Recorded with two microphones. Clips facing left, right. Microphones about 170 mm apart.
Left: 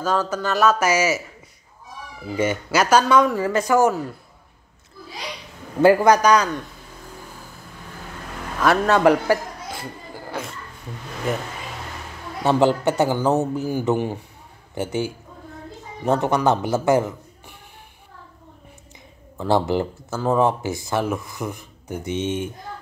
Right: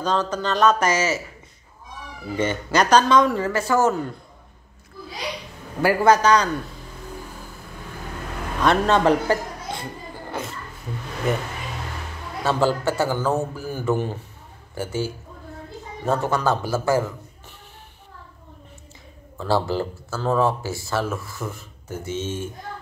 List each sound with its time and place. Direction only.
0.0 s speech: 10° left (ahead or behind)
2.3 s speech: 5° left (ahead or behind)
5.8 s speech: 20° left (ahead or behind)
8.6 s speech: 10° left (ahead or behind)
12.4 s a man's voice: 20° left (ahead or behind)
19.3 s speech: 20° left (ahead or behind)